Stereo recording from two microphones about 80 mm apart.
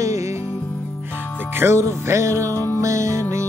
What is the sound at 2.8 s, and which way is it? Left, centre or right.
Music, right.